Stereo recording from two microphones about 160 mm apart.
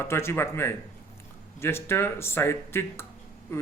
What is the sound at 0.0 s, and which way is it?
A man's voice, 15° left (ahead or behind).